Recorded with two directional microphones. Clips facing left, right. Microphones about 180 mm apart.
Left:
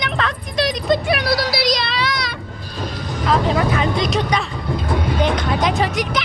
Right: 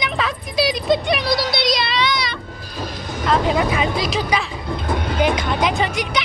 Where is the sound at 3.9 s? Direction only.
5° right (ahead or behind).